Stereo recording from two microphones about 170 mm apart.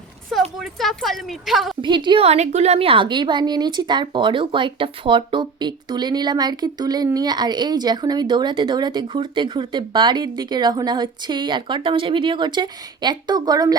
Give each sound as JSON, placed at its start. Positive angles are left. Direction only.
{"t": 0.6, "sound": "speech", "side_deg": 0}
{"t": 1.8, "sound": "a woman's voice", "side_deg": -25}